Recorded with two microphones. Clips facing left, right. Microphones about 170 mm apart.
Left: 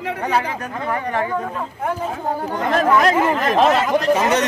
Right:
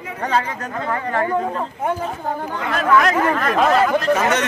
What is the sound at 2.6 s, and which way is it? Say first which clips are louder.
Speech: left 1 dB; 40° left (ahead or behind).